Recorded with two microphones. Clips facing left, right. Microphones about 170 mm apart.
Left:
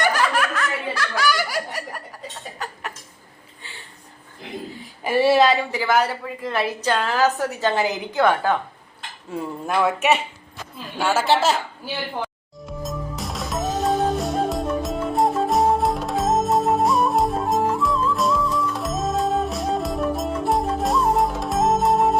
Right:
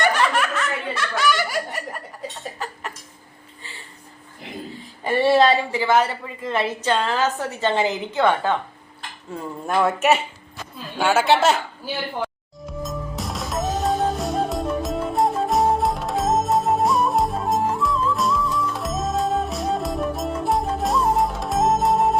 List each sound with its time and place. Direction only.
0.0 s laughter: 5° left (ahead or behind)
3.6 s a sound: centre (ahead or behind)
5.0 s a woman's voice: centre (ahead or behind)
9.6 s a woman's voice: centre (ahead or behind)
12.6 s music: centre (ahead or behind)